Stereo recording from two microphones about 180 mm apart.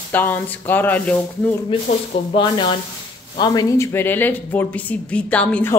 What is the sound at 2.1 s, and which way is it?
Speech, 35° left (ahead or behind).